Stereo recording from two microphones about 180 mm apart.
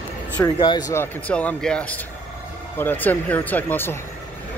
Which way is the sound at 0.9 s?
10° left (ahead or behind).